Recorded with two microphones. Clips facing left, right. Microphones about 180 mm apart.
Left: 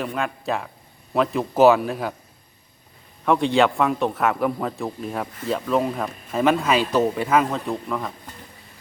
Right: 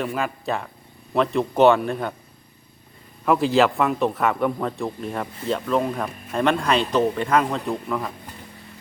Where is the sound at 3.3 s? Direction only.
Centre (ahead or behind).